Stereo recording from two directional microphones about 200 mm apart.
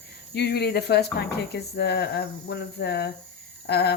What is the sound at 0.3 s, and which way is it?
Speech, 55° left (ahead or behind).